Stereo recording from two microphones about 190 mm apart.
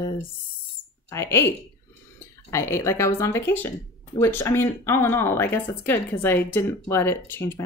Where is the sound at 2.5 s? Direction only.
15° left (ahead or behind).